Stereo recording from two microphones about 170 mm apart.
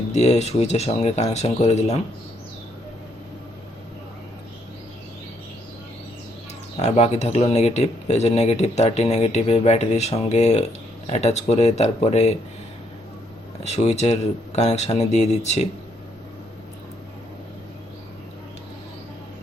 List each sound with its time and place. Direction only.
0.1 s speech: 40° left (ahead or behind)
6.7 s speech: 40° left (ahead or behind)
13.7 s speech: 40° left (ahead or behind)